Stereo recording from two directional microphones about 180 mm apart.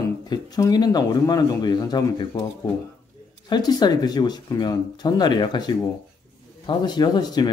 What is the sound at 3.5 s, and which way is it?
Speech, 25° left (ahead or behind).